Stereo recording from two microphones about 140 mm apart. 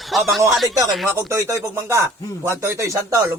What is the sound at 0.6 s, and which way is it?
Speech, 25° right (ahead or behind).